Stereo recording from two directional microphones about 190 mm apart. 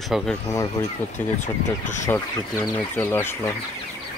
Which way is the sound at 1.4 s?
40° left (ahead or behind).